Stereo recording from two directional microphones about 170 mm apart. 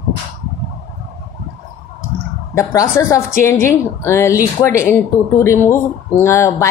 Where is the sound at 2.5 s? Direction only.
15° left (ahead or behind).